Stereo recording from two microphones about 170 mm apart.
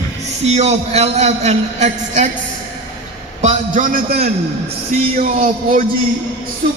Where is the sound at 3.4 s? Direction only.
50° right (ahead or behind).